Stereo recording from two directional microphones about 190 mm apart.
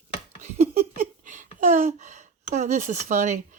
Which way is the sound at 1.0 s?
45° right (ahead or behind).